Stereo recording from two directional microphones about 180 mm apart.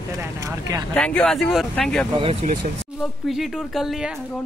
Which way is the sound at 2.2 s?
30° right (ahead or behind).